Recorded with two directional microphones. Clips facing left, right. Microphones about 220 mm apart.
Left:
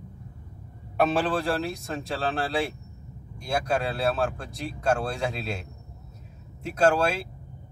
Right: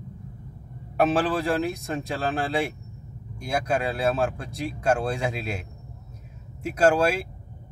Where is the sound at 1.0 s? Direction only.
5° right (ahead or behind).